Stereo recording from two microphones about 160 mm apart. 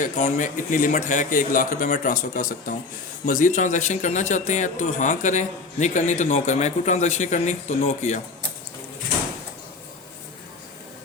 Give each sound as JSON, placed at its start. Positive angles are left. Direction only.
{"t": 0.0, "sound": "speech", "side_deg": 50}